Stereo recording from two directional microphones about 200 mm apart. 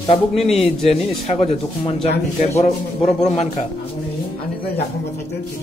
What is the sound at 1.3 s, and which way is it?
Speech, 30° left (ahead or behind).